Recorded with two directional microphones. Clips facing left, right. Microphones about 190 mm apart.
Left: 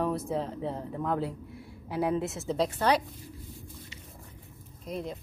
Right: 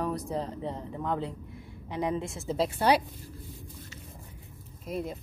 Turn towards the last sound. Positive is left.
turn(degrees=-5)  # may be behind; listen again after turning